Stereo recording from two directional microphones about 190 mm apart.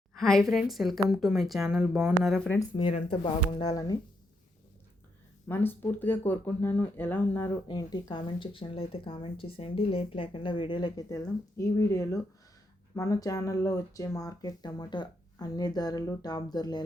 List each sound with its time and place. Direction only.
0.1 s a woman's voice: centre (ahead or behind)
2.7 s speech: 30° left (ahead or behind)
5.5 s speech: 10° left (ahead or behind)